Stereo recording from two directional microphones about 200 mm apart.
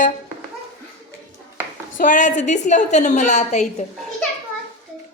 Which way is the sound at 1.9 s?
40° left (ahead or behind).